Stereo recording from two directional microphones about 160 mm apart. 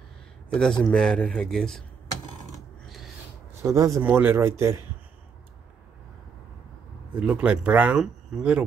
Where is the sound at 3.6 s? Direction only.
20° right (ahead or behind).